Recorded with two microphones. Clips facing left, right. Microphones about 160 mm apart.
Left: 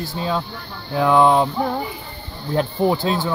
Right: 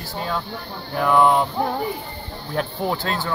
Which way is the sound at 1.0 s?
20° left (ahead or behind).